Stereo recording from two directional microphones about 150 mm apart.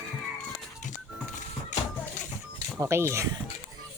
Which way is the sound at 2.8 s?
20° right (ahead or behind).